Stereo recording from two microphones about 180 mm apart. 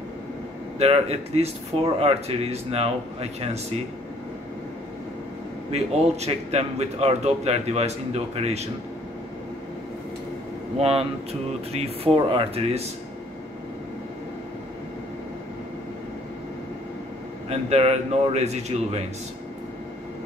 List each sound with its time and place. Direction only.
0.7 s speech: 35° right (ahead or behind)
5.7 s speech: 35° right (ahead or behind)
10.8 s speech: 35° right (ahead or behind)
17.5 s speech: 35° right (ahead or behind)